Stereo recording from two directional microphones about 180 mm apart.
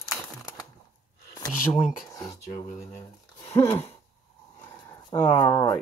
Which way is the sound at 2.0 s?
20° left (ahead or behind).